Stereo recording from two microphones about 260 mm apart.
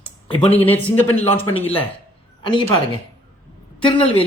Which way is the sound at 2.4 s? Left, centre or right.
Centre.